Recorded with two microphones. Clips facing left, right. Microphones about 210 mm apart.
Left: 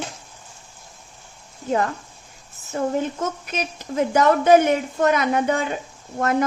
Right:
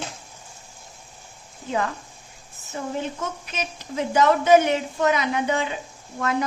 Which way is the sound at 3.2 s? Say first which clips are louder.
Left 4 dB; 45° left (ahead or behind).